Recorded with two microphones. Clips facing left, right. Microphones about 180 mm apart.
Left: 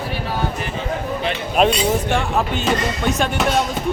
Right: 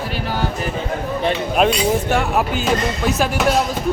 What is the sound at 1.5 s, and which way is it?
Speech, 5° right (ahead or behind).